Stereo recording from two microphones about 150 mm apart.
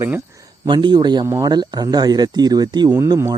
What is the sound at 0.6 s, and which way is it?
Speech, 30° right (ahead or behind).